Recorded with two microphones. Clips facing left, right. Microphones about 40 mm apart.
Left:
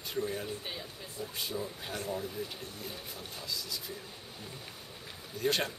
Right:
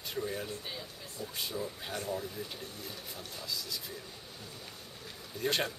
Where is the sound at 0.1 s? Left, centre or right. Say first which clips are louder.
Left 2 dB; centre.